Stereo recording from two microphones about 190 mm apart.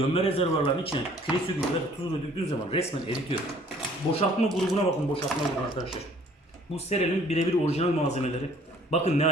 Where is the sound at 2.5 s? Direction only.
30° left (ahead or behind).